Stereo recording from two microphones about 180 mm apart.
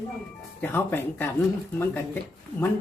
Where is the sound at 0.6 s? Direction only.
10° left (ahead or behind).